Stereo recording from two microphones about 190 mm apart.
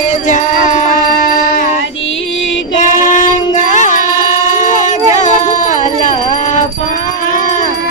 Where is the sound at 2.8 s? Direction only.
40° left (ahead or behind).